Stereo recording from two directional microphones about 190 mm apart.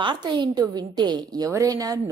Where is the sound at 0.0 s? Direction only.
25° right (ahead or behind).